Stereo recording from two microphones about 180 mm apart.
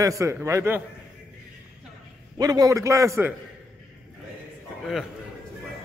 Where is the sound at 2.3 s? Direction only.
20° right (ahead or behind).